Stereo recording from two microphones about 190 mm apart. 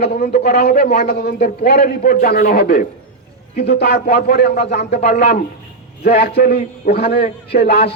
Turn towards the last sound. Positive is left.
turn(degrees=60)  # may be behind; listen again after turning